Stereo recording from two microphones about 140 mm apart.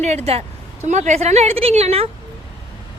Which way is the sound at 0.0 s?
50° right (ahead or behind).